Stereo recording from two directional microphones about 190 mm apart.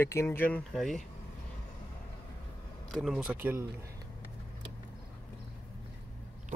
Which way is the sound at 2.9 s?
Centre (ahead or behind).